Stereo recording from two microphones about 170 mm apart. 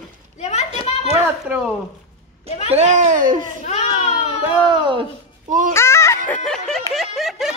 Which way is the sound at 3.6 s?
40° left (ahead or behind).